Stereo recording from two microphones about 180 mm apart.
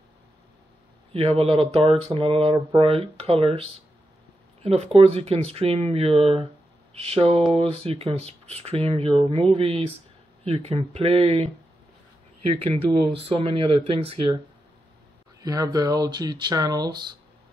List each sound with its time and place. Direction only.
1.1 s speech: 35° right (ahead or behind)
4.6 s speech: 35° right (ahead or behind)
13.1 s speech: 30° right (ahead or behind)
15.4 s speech: 20° right (ahead or behind)